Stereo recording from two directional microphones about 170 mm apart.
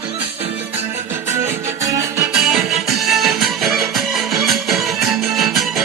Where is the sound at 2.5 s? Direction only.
Centre (ahead or behind).